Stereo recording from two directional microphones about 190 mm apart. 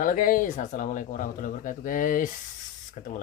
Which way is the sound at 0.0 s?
45° left (ahead or behind).